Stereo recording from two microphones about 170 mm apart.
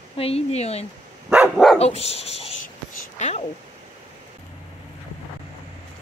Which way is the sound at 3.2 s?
45° left (ahead or behind).